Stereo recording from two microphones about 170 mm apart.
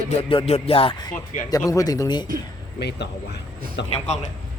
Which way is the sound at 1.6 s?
20° left (ahead or behind).